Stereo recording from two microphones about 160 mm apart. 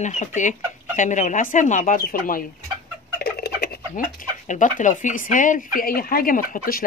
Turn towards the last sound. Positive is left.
turn(degrees=60)  # may be behind; listen again after turning